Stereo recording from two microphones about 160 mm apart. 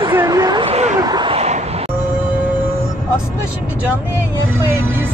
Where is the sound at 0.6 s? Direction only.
40° right (ahead or behind).